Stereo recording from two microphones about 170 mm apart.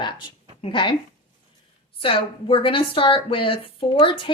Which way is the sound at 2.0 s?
30° left (ahead or behind).